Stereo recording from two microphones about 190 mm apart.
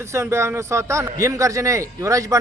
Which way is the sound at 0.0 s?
15° right (ahead or behind).